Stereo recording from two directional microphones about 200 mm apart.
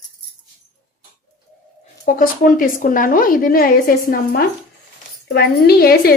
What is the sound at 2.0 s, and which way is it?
A woman's voice, 45° left (ahead or behind).